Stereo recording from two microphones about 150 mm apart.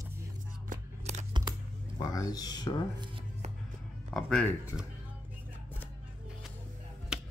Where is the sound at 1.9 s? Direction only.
25° left (ahead or behind).